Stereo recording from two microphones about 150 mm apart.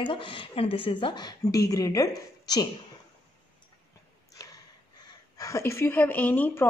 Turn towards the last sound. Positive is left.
turn(degrees=10)  # may be behind; listen again after turning